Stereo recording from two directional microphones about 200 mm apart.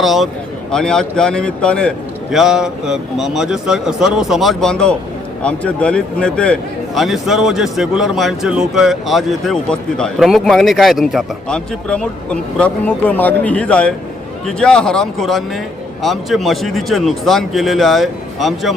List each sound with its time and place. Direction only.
0.0 s a man's voice: centre (ahead or behind)